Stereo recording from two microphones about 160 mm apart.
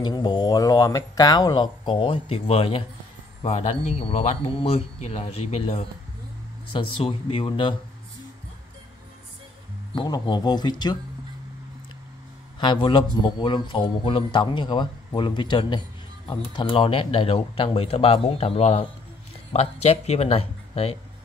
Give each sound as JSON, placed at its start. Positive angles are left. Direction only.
{"t": 0.0, "sound": "speech", "side_deg": 30}
{"t": 9.9, "sound": "speech", "side_deg": 25}
{"t": 12.5, "sound": "speech", "side_deg": 30}